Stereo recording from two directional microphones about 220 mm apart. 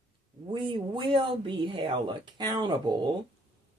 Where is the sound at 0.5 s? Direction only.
20° right (ahead or behind).